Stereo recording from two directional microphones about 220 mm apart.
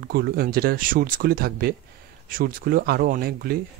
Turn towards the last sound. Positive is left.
turn(degrees=-40)  # may be behind; listen again after turning